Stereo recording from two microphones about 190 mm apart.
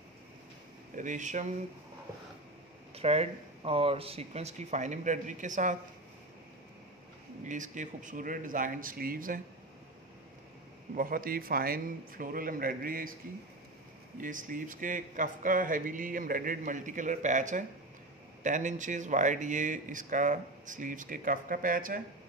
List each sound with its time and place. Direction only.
0.9 s speech: 40° right (ahead or behind)
2.9 s speech: 35° right (ahead or behind)
7.4 s speech: 40° right (ahead or behind)
11.0 s speech: 50° right (ahead or behind)
14.2 s speech: 45° right (ahead or behind)